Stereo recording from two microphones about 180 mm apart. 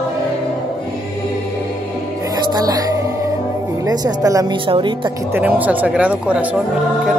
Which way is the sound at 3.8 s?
20° right (ahead or behind).